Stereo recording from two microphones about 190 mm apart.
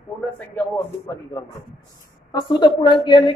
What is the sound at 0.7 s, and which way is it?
Speech, 15° left (ahead or behind).